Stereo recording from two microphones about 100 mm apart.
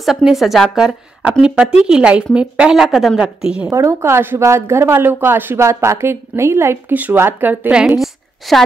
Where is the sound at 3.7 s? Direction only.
30° right (ahead or behind).